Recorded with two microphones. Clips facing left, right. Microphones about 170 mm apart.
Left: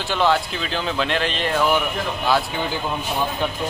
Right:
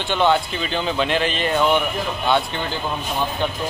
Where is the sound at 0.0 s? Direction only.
Centre (ahead or behind).